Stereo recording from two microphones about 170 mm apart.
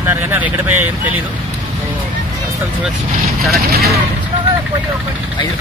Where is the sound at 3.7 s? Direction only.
65° right (ahead or behind).